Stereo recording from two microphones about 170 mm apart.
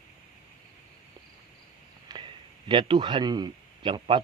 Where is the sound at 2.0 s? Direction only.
30° right (ahead or behind).